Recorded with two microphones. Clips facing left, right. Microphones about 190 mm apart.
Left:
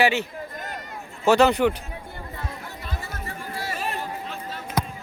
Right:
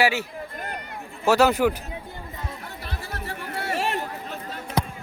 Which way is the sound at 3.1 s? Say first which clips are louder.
Right 1 dB; 65° right (ahead or behind).